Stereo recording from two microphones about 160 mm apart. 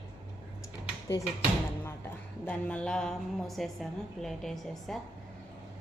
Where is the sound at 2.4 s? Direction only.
5° left (ahead or behind).